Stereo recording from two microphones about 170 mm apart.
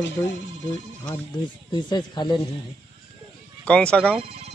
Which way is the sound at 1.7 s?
25° left (ahead or behind).